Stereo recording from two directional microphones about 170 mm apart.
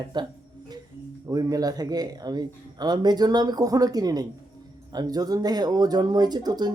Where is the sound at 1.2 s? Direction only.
20° right (ahead or behind).